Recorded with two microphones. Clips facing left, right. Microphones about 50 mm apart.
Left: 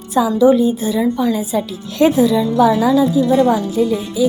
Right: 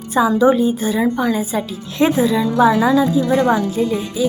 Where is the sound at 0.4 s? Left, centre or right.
Right.